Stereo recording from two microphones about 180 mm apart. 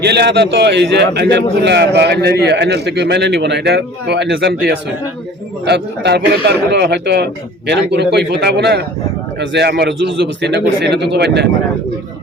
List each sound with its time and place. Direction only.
0.0 s a man's voice: 70° right (ahead or behind)